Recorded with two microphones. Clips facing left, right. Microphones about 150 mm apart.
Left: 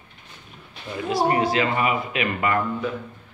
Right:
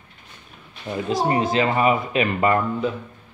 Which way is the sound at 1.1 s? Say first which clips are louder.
Even; 25° right (ahead or behind).